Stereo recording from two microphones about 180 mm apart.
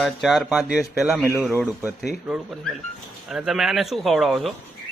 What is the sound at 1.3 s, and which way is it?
Speech, 15° right (ahead or behind).